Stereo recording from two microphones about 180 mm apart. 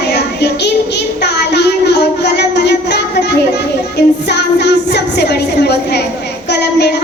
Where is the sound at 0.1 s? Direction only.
70° left (ahead or behind).